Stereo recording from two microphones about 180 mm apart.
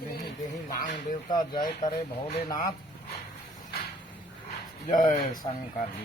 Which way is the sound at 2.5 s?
20° left (ahead or behind).